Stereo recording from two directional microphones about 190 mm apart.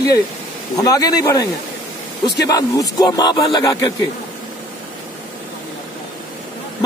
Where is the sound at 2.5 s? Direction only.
20° left (ahead or behind).